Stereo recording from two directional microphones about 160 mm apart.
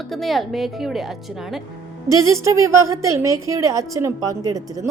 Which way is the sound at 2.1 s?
20° right (ahead or behind).